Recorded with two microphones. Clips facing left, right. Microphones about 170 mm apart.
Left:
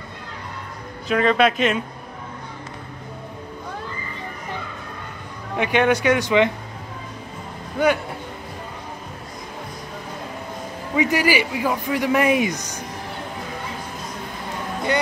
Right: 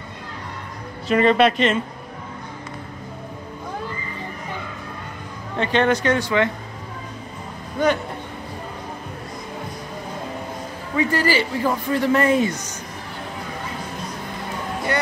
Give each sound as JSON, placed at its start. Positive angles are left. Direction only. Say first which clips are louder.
{"t": 1.0, "sound": "speech", "louder": "right 2 dB", "side_deg": 0}
{"t": 5.6, "sound": "a man's voice", "louder": "even", "side_deg": 10}
{"t": 11.0, "sound": "a man's voice", "louder": "left 1 dB", "side_deg": 15}